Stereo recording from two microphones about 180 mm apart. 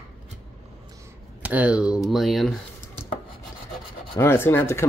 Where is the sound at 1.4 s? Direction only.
10° right (ahead or behind).